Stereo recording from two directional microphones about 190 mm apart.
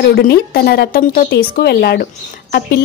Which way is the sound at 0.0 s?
55° left (ahead or behind).